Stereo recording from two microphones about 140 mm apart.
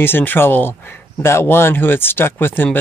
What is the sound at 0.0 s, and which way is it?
Speech, 15° left (ahead or behind).